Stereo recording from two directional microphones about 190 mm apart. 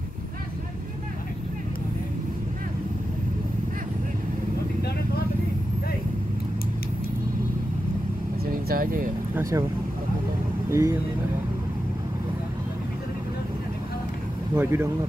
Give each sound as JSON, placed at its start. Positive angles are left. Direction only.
{"t": 8.5, "sound": "vehicle", "side_deg": -50}
{"t": 9.3, "sound": "speech", "side_deg": -15}
{"t": 10.7, "sound": "speech", "side_deg": -15}
{"t": 14.5, "sound": "speech", "side_deg": -15}